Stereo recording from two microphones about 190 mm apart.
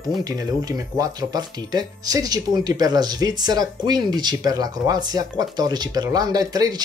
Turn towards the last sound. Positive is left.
turn(degrees=-20)  # may be behind; listen again after turning